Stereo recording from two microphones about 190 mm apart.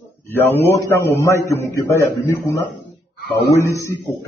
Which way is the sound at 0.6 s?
15° left (ahead or behind).